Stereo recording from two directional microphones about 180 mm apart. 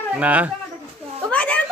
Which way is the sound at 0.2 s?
10° right (ahead or behind).